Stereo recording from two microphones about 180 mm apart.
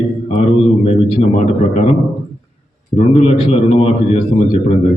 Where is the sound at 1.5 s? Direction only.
40° left (ahead or behind).